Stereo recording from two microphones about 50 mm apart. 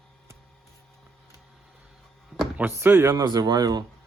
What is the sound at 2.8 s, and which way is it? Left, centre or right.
Speech, right.